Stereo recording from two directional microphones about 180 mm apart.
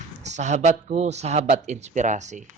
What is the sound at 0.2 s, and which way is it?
Speech, 40° right (ahead or behind).